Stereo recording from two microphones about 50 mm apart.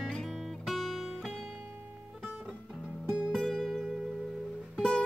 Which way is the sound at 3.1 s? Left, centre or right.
Centre.